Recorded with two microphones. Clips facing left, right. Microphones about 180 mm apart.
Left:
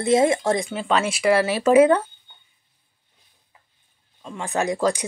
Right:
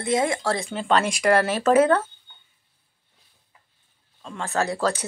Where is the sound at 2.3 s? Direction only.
15° left (ahead or behind).